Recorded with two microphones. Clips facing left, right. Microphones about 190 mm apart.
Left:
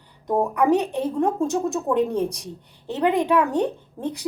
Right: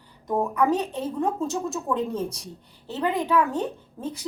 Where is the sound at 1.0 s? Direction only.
15° left (ahead or behind).